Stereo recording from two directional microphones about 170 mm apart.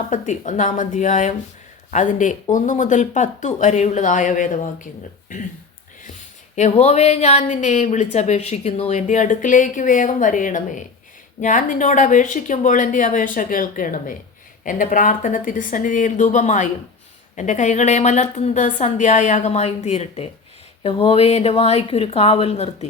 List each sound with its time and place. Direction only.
0.1 s speech: 45° left (ahead or behind)
6.6 s speech: 40° left (ahead or behind)